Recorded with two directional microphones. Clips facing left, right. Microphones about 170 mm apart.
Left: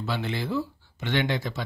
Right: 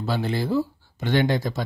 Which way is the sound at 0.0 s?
40° right (ahead or behind).